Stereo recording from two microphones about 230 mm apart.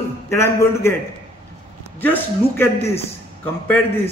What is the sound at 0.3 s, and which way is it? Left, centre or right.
Speech, centre.